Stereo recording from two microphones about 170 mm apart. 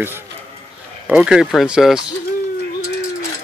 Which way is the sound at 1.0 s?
5° right (ahead or behind).